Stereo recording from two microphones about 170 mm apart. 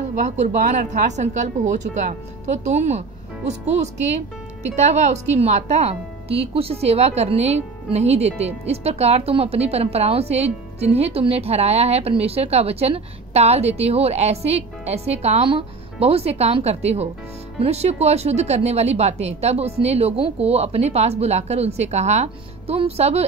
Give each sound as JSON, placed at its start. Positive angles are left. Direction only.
{"t": 0.1, "sound": "a woman's voice", "side_deg": -45}